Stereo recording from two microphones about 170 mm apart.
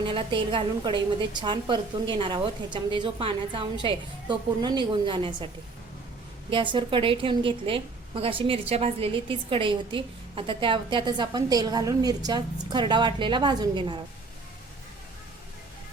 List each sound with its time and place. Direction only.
0.0 s a woman's voice: 30° right (ahead or behind)
6.5 s a woman's voice: 30° right (ahead or behind)